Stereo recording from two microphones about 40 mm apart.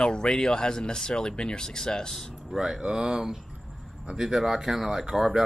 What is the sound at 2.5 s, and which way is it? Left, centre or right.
Speech, centre.